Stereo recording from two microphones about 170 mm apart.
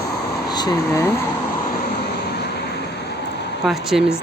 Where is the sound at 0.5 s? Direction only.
25° left (ahead or behind).